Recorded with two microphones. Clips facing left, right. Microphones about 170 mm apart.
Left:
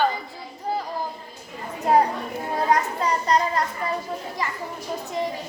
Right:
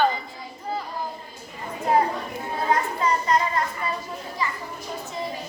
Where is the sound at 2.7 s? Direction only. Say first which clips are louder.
Even; 40° left (ahead or behind).